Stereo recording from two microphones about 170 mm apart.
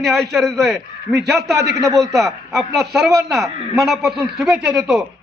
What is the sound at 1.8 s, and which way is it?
Speech, 20° right (ahead or behind).